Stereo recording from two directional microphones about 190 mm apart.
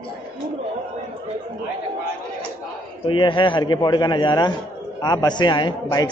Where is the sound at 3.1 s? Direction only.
25° left (ahead or behind).